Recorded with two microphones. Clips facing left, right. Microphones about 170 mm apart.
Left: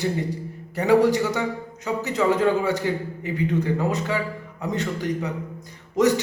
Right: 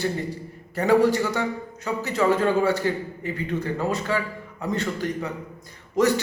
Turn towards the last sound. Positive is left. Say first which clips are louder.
# left 1 dB
turn(degrees=15)  # may be behind; listen again after turning